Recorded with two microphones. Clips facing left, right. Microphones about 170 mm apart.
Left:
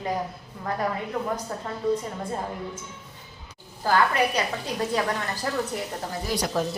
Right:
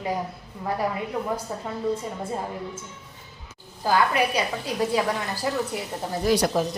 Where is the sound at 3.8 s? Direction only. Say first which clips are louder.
Even; 10° right (ahead or behind).